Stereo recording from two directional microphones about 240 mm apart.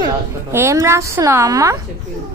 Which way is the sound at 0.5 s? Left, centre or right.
Centre.